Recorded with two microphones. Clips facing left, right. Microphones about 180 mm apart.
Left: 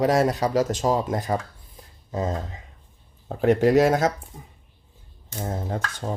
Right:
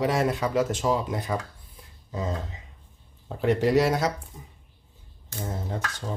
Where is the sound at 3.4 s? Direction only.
50° left (ahead or behind).